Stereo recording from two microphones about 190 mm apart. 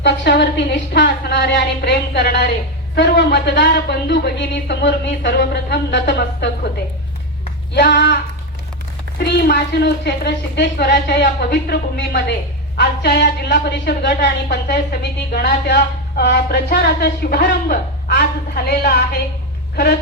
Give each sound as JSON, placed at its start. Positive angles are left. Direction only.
{"t": 0.0, "sound": "speech", "side_deg": 65}
{"t": 7.7, "sound": "speech", "side_deg": 65}